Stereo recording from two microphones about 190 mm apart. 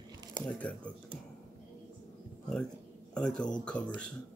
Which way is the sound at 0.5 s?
5° left (ahead or behind).